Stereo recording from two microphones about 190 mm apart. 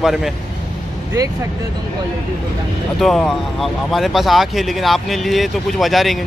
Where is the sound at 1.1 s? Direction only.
15° right (ahead or behind).